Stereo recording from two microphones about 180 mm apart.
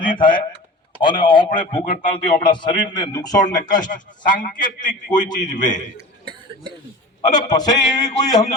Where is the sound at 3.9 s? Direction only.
45° left (ahead or behind).